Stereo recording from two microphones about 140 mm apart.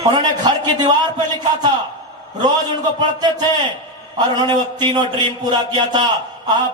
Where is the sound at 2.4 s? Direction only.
30° right (ahead or behind).